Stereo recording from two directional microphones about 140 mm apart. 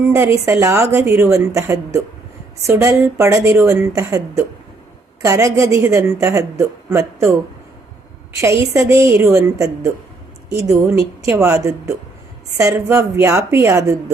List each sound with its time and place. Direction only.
0.0 s a woman's voice: 15° right (ahead or behind)
8.4 s a woman's voice: 20° right (ahead or behind)